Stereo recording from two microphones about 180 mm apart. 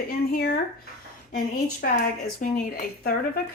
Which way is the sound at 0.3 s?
55° left (ahead or behind).